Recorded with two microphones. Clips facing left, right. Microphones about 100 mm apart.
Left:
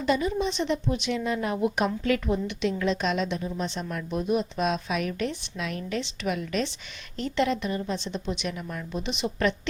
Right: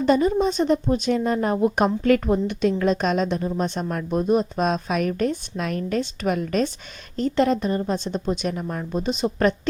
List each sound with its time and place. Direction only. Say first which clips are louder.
0.1 s a woman's voice: right 6 dB; 45° right (ahead or behind)